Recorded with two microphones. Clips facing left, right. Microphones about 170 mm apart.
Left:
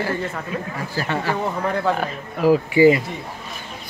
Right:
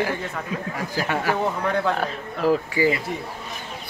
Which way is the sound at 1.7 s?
Centre (ahead or behind).